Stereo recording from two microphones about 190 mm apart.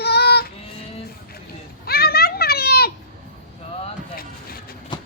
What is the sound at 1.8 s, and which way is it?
Children playing, 55° left (ahead or behind).